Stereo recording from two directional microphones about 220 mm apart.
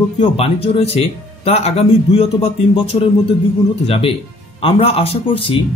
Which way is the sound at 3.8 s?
25° left (ahead or behind).